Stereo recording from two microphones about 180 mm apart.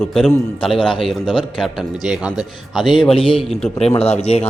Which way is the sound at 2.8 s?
25° left (ahead or behind).